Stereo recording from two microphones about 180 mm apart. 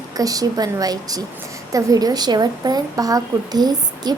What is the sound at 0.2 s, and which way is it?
A woman's voice, 20° right (ahead or behind).